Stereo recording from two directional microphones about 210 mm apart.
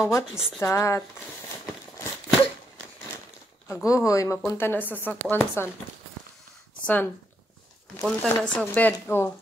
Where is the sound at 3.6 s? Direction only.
15° left (ahead or behind).